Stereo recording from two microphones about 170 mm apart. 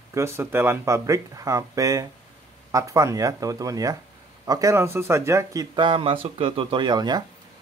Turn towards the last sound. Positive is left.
turn(degrees=-25)  # may be behind; listen again after turning